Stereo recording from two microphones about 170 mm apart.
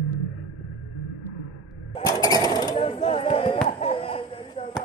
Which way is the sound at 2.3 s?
20° left (ahead or behind).